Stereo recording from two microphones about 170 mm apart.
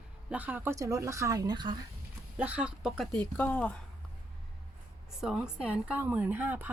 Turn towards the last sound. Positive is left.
turn(degrees=-10)  # may be behind; listen again after turning